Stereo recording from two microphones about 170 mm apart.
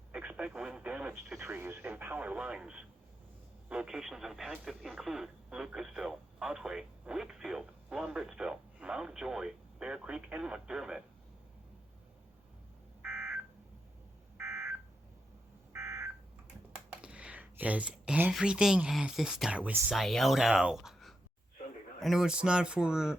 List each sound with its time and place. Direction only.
0.1 s radio: 5° right (ahead or behind)
1.4 s speech: 10° right (ahead or behind)
13.0 s telephone dialing: 10° right (ahead or behind)
17.0 s speech: 5° right (ahead or behind)